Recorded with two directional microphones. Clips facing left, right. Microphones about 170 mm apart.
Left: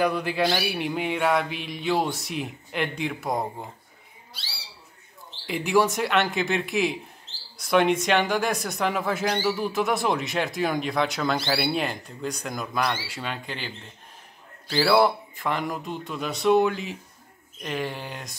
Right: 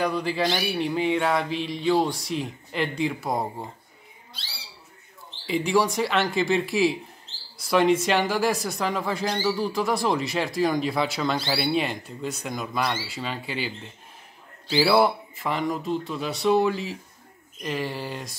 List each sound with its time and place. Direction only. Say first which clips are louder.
0.0 s speech: left 1 dB; centre (ahead or behind)
5.5 s speech: even; centre (ahead or behind)